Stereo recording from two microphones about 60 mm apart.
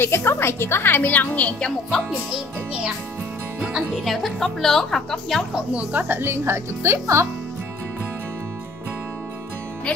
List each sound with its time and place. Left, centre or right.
0.0 s a woman's voice: left
1.9 s a woman's voice: centre
3.6 s speech: centre
4.0 s a woman's voice: centre
5.5 s speech: centre
6.0 s speech: right